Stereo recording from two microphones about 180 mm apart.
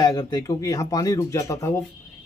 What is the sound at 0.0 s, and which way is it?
A man's voice, 20° left (ahead or behind).